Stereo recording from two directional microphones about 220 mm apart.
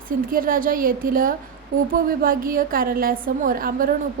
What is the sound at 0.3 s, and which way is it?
A woman's voice, 40° right (ahead or behind).